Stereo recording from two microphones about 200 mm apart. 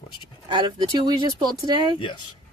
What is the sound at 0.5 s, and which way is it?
Speech, 25° right (ahead or behind).